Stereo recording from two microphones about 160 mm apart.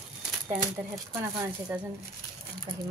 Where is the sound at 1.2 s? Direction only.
15° right (ahead or behind).